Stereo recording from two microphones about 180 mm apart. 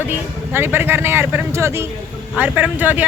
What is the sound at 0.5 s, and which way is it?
Speech, 10° right (ahead or behind).